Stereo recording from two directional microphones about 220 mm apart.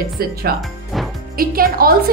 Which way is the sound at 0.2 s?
45° right (ahead or behind).